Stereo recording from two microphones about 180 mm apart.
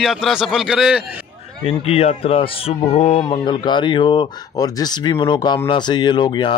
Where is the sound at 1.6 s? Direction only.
35° left (ahead or behind).